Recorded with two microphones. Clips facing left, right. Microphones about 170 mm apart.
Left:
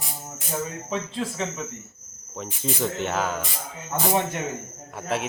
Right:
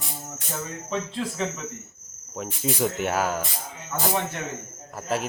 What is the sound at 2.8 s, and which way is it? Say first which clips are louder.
Speech: right 1 dB; 10° right (ahead or behind).